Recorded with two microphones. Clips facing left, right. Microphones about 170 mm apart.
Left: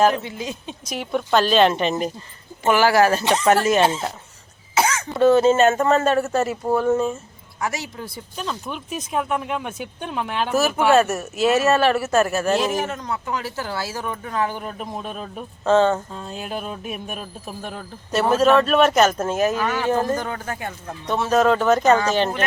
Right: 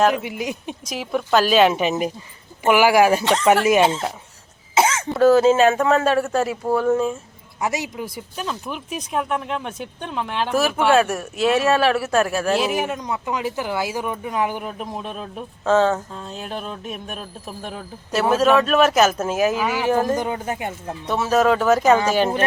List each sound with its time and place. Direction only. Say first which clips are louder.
0.2 s speech: right 3 dB; 15° right (ahead or behind)
0.9 s speech: right 1 dB; centre (ahead or behind)
4.7 s throat clearing: right 2 dB; 25° right (ahead or behind)
5.1 s speech: right 1 dB; centre (ahead or behind)
7.6 s speech: right 3 dB; 20° right (ahead or behind)
21.1 s speech: even; 5° right (ahead or behind)